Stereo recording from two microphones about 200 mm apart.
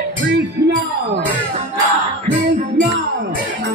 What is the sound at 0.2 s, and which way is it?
Music, 60° right (ahead or behind).